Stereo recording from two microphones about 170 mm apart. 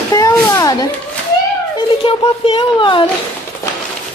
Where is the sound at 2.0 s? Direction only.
30° left (ahead or behind).